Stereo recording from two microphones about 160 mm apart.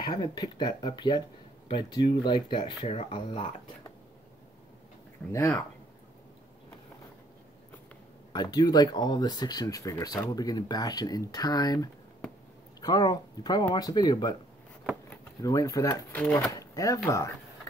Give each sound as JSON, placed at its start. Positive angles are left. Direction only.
{"t": 0.1, "sound": "speech", "side_deg": 25}
{"t": 5.3, "sound": "speech", "side_deg": 15}
{"t": 8.3, "sound": "speech", "side_deg": 25}